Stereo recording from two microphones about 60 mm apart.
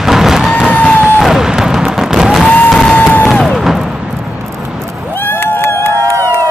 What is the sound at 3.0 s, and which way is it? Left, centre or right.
Music, left.